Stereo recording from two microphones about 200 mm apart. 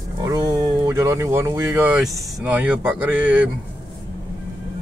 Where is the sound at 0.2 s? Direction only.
20° right (ahead or behind).